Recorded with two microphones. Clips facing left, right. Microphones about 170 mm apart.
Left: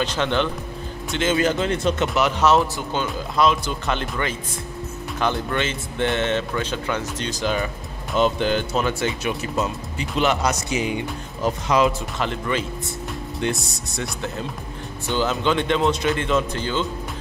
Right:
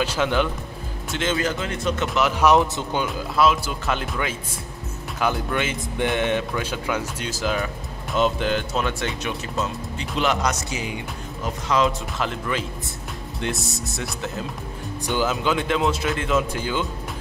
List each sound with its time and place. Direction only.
0.0 s speech: 10° right (ahead or behind)
1.3 s speech: 25° left (ahead or behind)
2.1 s speech: centre (ahead or behind)
2.4 s speech: 15° right (ahead or behind)
3.3 s speech: 5° right (ahead or behind)
11.7 s speech: 10° left (ahead or behind)
12.2 s speech: centre (ahead or behind)